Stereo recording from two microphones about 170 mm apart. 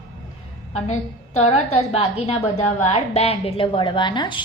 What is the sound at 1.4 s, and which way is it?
A woman's voice, 40° left (ahead or behind).